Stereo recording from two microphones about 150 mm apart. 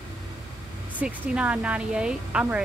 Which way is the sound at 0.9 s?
10° right (ahead or behind).